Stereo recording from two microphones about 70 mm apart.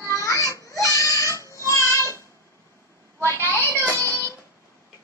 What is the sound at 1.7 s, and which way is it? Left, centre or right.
Child singing, left.